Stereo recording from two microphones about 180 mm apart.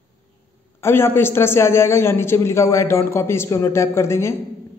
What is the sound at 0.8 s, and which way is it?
A man's voice, 15° left (ahead or behind).